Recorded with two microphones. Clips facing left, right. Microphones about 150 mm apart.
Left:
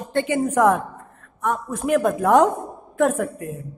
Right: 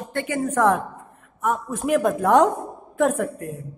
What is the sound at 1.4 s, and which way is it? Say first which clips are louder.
Speech: even; centre (ahead or behind).